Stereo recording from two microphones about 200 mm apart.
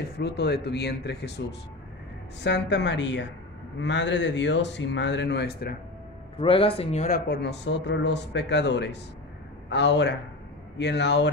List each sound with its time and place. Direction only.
0.2 s speech: 55° left (ahead or behind)
2.4 s speech: 60° left (ahead or behind)
6.3 s speech: 25° left (ahead or behind)
7.2 s speech: 55° left (ahead or behind)